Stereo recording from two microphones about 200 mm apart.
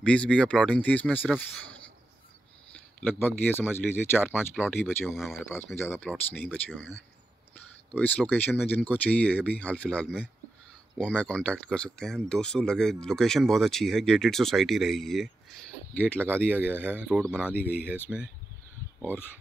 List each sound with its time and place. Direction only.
0.0 s speech: 5° left (ahead or behind)
3.0 s speech: 10° left (ahead or behind)
4.8 s speech: centre (ahead or behind)
7.9 s speech: 10° left (ahead or behind)
16.2 s speech: 10° right (ahead or behind)